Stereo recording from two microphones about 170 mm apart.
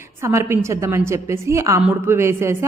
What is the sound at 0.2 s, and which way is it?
A woman's voice, 15° right (ahead or behind).